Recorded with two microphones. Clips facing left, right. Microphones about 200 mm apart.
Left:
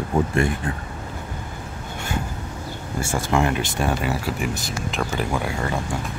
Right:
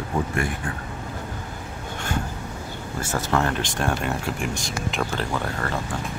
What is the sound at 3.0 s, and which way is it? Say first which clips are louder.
Speech: left 2 dB; 10° left (ahead or behind).